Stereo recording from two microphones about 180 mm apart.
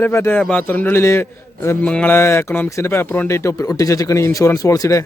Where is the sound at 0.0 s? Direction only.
15° left (ahead or behind).